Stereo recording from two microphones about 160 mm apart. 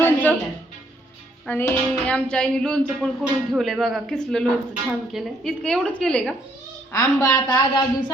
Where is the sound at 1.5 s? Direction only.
10° left (ahead or behind).